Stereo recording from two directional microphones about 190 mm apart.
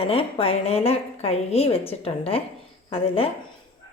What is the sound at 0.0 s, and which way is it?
A woman's voice, 30° left (ahead or behind).